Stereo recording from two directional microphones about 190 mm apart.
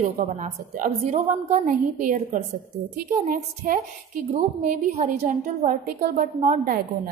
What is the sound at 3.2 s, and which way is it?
A woman's voice, 45° right (ahead or behind).